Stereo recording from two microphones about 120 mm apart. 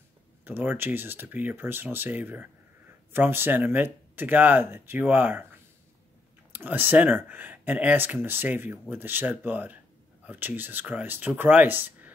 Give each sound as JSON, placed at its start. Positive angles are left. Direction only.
{"t": 0.5, "sound": "speech", "side_deg": -15}